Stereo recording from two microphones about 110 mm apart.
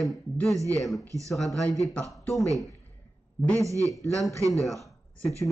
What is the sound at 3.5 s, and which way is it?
Speech, 30° right (ahead or behind).